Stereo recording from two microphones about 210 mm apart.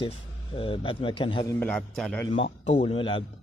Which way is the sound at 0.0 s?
25° left (ahead or behind).